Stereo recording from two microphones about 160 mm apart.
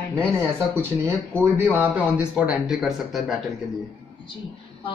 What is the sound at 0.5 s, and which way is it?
Speech, 15° right (ahead or behind).